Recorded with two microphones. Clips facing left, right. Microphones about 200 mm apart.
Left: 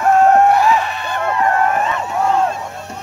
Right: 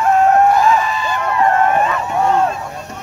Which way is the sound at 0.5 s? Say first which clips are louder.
Right 1 dB; 70° left (ahead or behind).